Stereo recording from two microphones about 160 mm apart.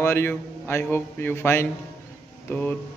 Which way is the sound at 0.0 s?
15° left (ahead or behind).